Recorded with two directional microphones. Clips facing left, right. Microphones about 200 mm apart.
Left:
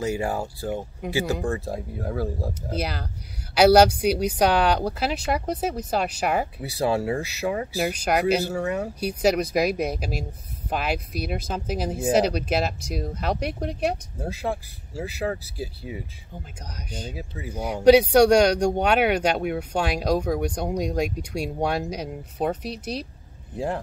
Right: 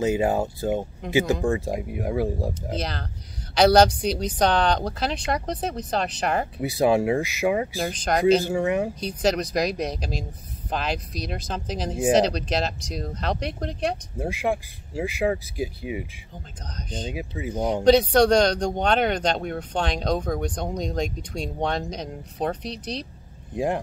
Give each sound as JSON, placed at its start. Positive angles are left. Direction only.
{"t": 0.0, "sound": "speech", "side_deg": -20}
{"t": 2.7, "sound": "speech", "side_deg": 10}
{"t": 6.6, "sound": "speech", "side_deg": -15}
{"t": 7.8, "sound": "speech", "side_deg": 10}
{"t": 8.5, "sound": "speech", "side_deg": -15}
{"t": 9.0, "sound": "speech", "side_deg": 10}
{"t": 14.2, "sound": "speech", "side_deg": -15}
{"t": 17.1, "sound": "speech", "side_deg": -15}
{"t": 17.8, "sound": "speech", "side_deg": 10}
{"t": 23.5, "sound": "speech", "side_deg": -15}